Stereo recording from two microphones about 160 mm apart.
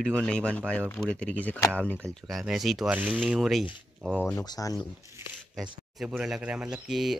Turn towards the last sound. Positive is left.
turn(degrees=0)  # may be behind; listen again after turning